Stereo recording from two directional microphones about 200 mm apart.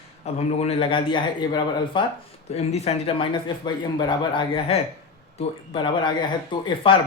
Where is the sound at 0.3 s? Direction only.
30° left (ahead or behind).